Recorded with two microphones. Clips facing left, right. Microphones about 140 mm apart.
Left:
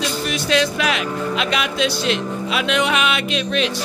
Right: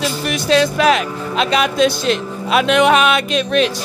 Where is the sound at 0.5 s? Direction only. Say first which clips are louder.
Right 7 dB; 35° right (ahead or behind).